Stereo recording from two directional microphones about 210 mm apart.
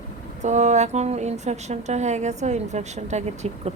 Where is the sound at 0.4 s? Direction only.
35° right (ahead or behind).